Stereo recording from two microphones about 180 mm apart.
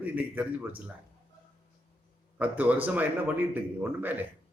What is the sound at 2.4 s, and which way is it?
A man's voice, 10° right (ahead or behind).